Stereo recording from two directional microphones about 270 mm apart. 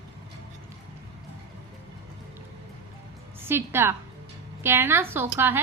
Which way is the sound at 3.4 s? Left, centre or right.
Centre.